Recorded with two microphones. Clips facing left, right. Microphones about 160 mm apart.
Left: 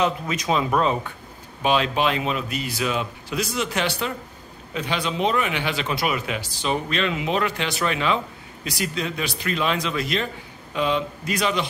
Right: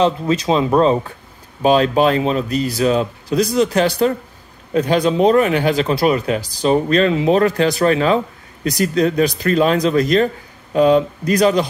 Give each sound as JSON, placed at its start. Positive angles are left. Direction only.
{"t": 0.0, "sound": "speech", "side_deg": -30}